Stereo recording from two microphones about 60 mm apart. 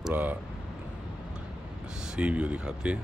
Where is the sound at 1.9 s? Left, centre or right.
Centre.